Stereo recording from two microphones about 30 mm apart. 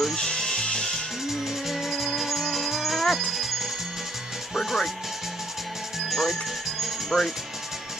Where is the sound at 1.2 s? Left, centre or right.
Centre.